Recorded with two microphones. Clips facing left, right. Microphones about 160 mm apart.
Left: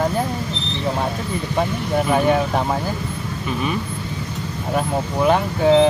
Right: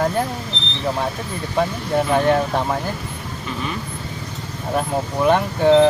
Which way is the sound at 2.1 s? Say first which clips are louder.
Even; 5° left (ahead or behind).